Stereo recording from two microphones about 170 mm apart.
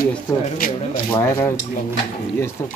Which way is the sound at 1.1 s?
15° left (ahead or behind).